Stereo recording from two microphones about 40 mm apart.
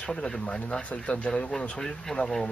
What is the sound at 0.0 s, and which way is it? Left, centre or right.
Speech, left.